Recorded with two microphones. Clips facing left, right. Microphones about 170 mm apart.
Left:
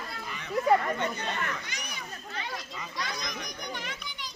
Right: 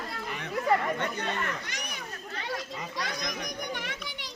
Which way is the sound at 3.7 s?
65° right (ahead or behind).